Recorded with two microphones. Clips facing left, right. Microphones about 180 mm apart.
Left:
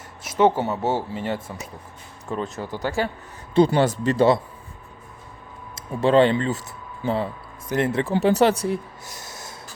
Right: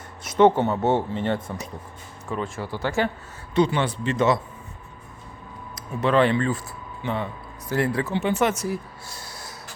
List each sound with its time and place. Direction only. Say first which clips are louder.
0.3 s speech: right 2 dB; 10° left (ahead or behind)
2.6 s speech: left 1 dB; 20° left (ahead or behind)
2.8 s speech: right 1 dB; 35° left (ahead or behind)
5.7 s speech: left 3 dB; 30° left (ahead or behind)
8.1 s speech: left 8 dB; 40° left (ahead or behind); by 9.5 s 20° left (ahead or behind)